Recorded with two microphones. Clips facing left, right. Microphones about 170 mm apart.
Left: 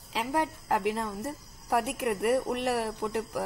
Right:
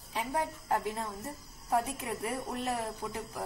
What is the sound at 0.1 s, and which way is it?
A woman's voice, 85° left.